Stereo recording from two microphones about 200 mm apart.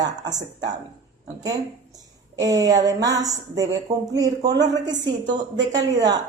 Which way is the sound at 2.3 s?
15° right (ahead or behind).